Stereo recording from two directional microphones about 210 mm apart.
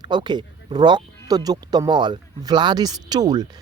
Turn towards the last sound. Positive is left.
turn(degrees=-20)  # may be behind; listen again after turning